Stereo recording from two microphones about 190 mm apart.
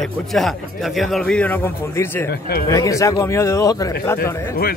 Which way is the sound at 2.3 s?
55° left (ahead or behind).